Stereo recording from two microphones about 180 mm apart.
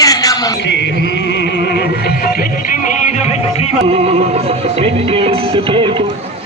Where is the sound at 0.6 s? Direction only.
75° left (ahead or behind); by 3.7 s 40° left (ahead or behind).